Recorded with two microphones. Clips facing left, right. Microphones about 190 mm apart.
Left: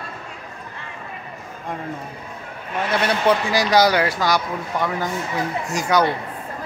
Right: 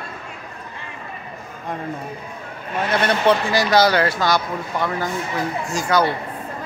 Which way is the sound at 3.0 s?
15° left (ahead or behind).